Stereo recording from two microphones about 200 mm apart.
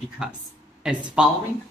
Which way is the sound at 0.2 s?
5° right (ahead or behind).